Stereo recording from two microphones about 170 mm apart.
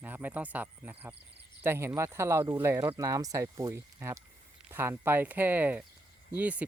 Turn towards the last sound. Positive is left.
turn(degrees=-10)  # may be behind; listen again after turning